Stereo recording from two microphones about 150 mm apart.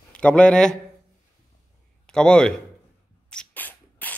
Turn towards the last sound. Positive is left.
turn(degrees=10)  # may be behind; listen again after turning